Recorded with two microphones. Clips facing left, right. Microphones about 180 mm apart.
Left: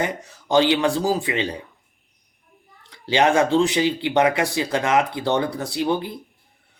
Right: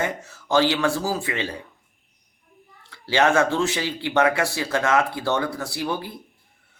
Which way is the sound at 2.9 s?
15° left (ahead or behind).